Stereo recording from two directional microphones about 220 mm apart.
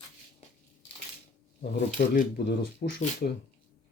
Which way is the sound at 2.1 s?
45° left (ahead or behind).